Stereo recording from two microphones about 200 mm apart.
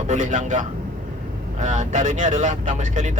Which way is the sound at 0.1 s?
40° right (ahead or behind).